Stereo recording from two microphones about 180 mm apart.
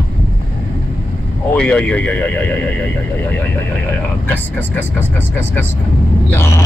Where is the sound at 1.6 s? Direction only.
5° left (ahead or behind).